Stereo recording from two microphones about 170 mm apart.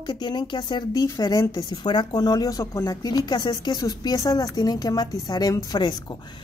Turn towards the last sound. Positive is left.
turn(degrees=25)  # may be behind; listen again after turning